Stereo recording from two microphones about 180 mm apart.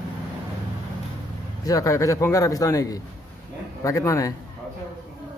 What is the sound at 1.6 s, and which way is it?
A man's voice, 20° left (ahead or behind).